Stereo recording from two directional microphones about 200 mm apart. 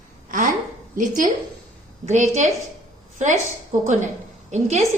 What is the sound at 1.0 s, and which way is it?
A woman's voice, 40° right (ahead or behind).